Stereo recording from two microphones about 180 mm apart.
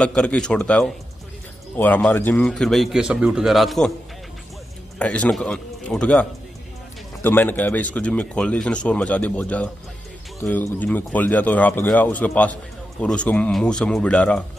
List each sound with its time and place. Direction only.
0.0 s a man's voice: 5° left (ahead or behind)
4.9 s a man's voice: 5° left (ahead or behind)